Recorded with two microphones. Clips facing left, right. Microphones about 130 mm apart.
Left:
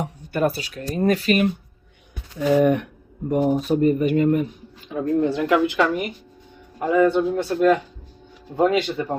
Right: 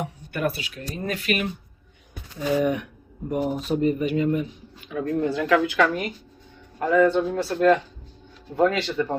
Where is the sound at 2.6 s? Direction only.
55° left (ahead or behind).